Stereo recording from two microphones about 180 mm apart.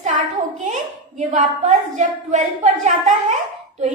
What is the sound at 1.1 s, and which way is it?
A child's voice, 45° right (ahead or behind).